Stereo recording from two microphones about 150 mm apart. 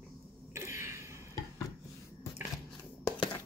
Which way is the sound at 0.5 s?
15° right (ahead or behind).